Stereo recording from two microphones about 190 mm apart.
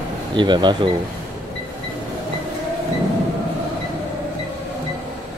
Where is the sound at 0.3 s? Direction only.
25° right (ahead or behind).